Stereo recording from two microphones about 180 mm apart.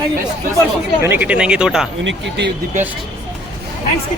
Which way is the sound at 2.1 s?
75° right (ahead or behind).